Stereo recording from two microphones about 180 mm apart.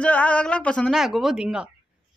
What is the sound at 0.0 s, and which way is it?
Speech, 10° left (ahead or behind).